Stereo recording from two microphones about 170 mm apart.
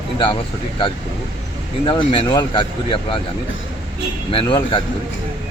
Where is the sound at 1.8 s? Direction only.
25° left (ahead or behind).